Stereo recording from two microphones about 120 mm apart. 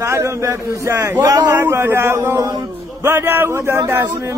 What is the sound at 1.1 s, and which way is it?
Speech, 35° right (ahead or behind).